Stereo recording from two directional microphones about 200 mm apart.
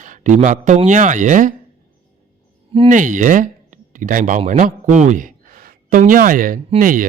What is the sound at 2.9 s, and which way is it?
Speech, 40° right (ahead or behind).